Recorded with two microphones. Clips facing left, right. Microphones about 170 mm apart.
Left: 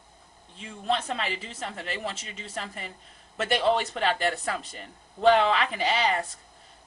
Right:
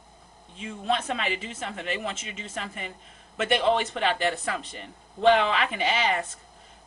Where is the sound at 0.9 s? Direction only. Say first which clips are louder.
Right 2 dB; 35° left (ahead or behind).